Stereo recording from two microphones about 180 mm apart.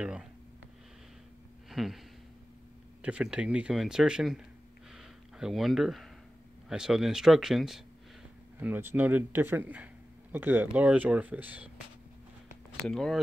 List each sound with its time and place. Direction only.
0.0 s speech: 5° right (ahead or behind)
1.7 s a sound: centre (ahead or behind)
3.0 s speech: 5° right (ahead or behind)
4.9 s a sound: centre (ahead or behind)
6.7 s speech: centre (ahead or behind)
12.8 s speech: centre (ahead or behind)